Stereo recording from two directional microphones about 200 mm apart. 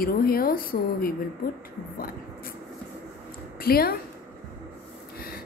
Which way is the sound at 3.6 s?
50° left (ahead or behind).